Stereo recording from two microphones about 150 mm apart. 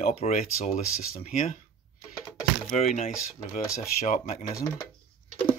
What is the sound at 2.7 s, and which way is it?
Speech, 50° left (ahead or behind).